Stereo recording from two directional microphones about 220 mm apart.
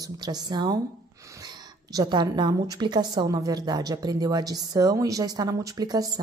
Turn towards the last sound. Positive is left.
turn(degrees=-15)  # may be behind; listen again after turning